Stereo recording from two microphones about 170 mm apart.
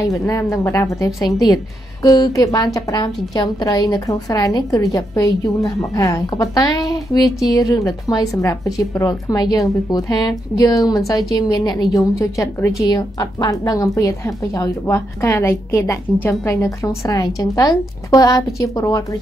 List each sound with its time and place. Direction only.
0.0 s a woman's voice: 20° left (ahead or behind)